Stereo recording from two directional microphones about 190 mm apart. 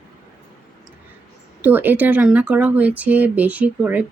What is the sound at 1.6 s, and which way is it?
Speech, 10° right (ahead or behind).